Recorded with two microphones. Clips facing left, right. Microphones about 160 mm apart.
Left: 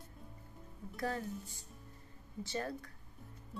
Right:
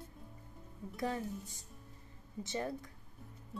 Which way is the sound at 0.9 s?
20° right (ahead or behind).